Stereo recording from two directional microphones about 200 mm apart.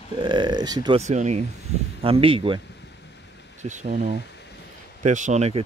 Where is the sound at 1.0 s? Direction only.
35° right (ahead or behind).